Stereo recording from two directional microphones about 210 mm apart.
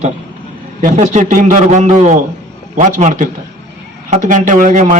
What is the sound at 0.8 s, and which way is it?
A man's voice, 35° right (ahead or behind).